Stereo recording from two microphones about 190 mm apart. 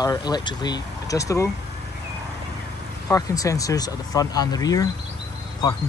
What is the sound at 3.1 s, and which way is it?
Speech, 20° left (ahead or behind).